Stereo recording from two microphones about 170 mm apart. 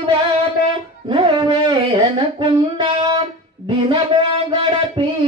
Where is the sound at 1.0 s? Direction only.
30° right (ahead or behind).